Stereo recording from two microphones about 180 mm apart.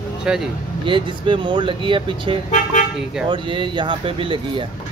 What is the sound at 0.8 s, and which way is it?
Speech, 25° right (ahead or behind).